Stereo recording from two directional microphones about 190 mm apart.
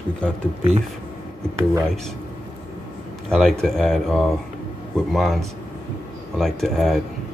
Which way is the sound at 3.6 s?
5° left (ahead or behind).